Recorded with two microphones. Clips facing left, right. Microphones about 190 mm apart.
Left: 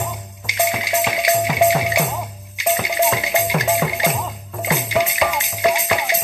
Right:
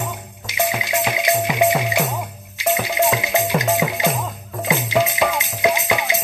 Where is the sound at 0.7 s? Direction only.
5° right (ahead or behind).